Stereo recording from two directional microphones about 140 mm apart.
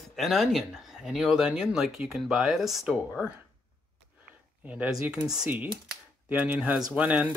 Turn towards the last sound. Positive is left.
turn(degrees=-10)  # may be behind; listen again after turning